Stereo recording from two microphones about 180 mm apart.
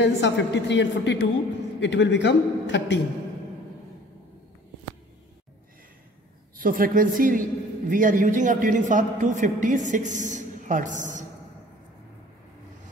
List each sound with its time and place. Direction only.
0.0 s a woman's voice: 80° left
6.5 s a man's voice: 50° right (ahead or behind)